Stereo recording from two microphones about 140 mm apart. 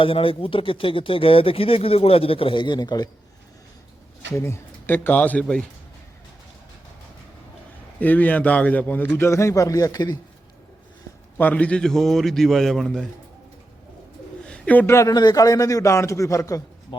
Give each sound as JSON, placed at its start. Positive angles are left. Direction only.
{"t": 0.0, "sound": "speech", "side_deg": 40}
{"t": 4.3, "sound": "a man's voice", "side_deg": 20}
{"t": 7.9, "sound": "a man's voice", "side_deg": 10}
{"t": 11.3, "sound": "a man's voice", "side_deg": 10}
{"t": 14.4, "sound": "a man's voice", "side_deg": 5}
{"t": 16.9, "sound": "speech", "side_deg": 35}